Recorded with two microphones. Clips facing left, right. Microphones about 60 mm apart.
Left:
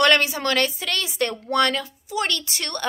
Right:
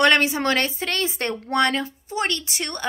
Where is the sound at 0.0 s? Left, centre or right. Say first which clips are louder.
Right 1 dB; right.